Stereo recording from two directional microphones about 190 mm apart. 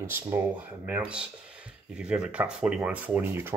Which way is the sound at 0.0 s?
15° right (ahead or behind).